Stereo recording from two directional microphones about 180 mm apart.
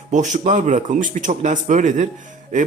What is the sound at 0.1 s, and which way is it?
A man's voice, 40° right (ahead or behind).